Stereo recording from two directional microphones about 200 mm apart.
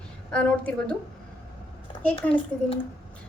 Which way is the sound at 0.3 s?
5° left (ahead or behind).